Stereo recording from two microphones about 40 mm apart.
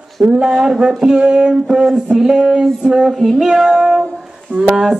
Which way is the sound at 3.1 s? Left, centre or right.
Centre.